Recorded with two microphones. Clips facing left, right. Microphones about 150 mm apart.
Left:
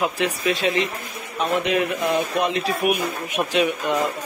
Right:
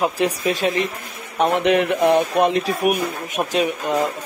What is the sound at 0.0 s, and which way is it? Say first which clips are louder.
Speech: right 3 dB; 40° right (ahead or behind).